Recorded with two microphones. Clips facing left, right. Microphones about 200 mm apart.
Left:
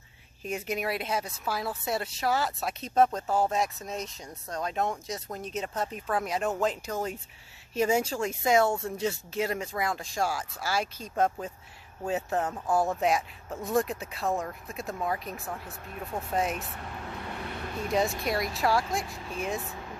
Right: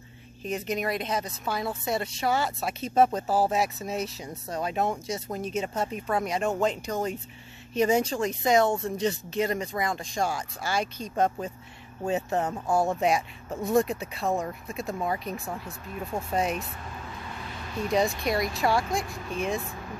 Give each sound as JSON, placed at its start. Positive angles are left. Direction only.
{"t": 0.4, "sound": "a woman's voice", "side_deg": 5}
{"t": 17.2, "sound": "vehicle", "side_deg": 60}
{"t": 17.8, "sound": "speech", "side_deg": 5}